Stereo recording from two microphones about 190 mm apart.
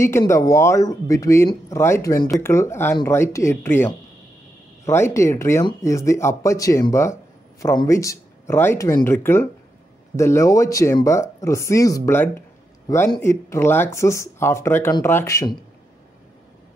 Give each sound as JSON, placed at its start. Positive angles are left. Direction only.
{"t": 0.0, "sound": "speech", "side_deg": 15}